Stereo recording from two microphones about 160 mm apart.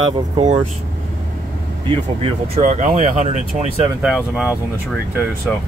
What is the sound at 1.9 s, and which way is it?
Speech, 40° right (ahead or behind).